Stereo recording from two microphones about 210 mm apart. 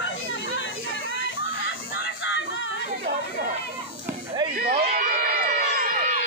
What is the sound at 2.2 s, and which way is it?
Music, 65° left (ahead or behind).